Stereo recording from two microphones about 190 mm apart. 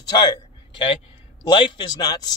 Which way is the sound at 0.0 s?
20° left (ahead or behind).